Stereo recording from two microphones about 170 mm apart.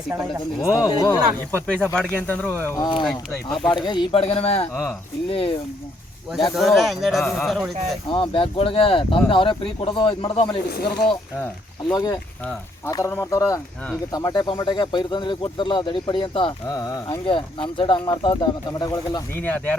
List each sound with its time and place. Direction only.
1.1 s speech: 10° left (ahead or behind)
3.0 s speech: centre (ahead or behind)
3.7 s speech: 25° left (ahead or behind)
4.7 s speech: 15° left (ahead or behind)
5.3 s speech: 35° left (ahead or behind)
6.5 s speech: centre (ahead or behind)
8.1 s speech: 30° left (ahead or behind)
10.7 s speech: 65° left (ahead or behind)
11.9 s speech: 20° left (ahead or behind)
16.6 s speech: 20° left (ahead or behind)
17.1 s speech: 30° left (ahead or behind)
19.4 s speech: 10° left (ahead or behind)